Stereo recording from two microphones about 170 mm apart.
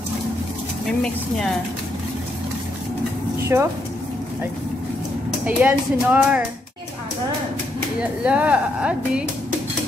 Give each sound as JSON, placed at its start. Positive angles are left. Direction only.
{"t": 3.5, "sound": "speech", "side_deg": -15}
{"t": 5.4, "sound": "speech", "side_deg": -10}
{"t": 8.0, "sound": "speech", "side_deg": -5}